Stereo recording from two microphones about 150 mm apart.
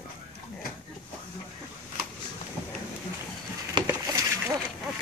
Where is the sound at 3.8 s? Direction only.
30° right (ahead or behind).